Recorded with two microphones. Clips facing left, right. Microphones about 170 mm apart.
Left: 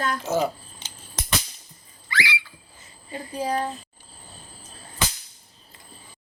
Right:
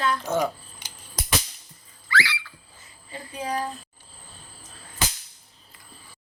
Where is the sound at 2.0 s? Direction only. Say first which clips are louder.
Right 2 dB; 15° left (ahead or behind).